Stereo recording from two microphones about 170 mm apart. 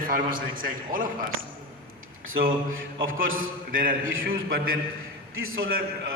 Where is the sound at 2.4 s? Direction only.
55° right (ahead or behind).